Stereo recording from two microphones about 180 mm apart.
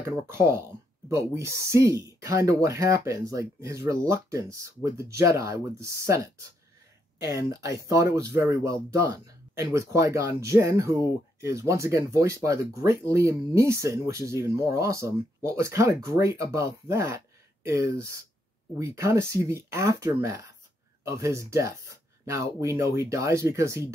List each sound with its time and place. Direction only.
0.3 s speech: 15° right (ahead or behind)